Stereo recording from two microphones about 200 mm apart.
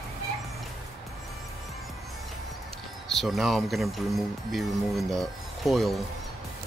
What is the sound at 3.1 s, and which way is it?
Speech, centre (ahead or behind).